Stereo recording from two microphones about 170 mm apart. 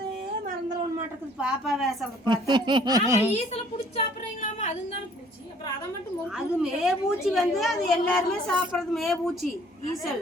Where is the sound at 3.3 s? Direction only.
40° left (ahead or behind).